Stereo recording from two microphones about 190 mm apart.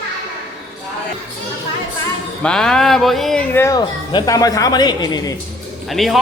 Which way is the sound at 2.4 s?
5° left (ahead or behind).